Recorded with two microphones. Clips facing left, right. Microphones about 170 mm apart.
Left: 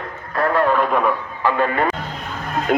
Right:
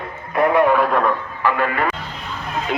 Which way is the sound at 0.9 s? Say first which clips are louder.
Even; 5° left (ahead or behind).